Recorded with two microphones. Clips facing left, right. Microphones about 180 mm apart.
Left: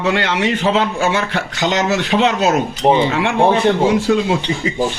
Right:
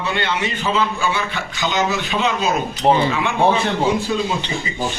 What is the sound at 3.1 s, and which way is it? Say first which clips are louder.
Cutlery: left 3 dB; 85° left.